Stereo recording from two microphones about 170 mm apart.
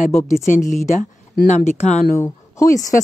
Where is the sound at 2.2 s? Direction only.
20° left (ahead or behind).